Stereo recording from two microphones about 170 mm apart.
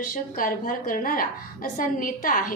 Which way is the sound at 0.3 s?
55° left (ahead or behind).